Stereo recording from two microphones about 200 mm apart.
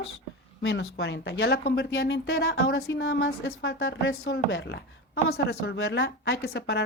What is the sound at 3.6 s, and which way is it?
Speech, 80° left.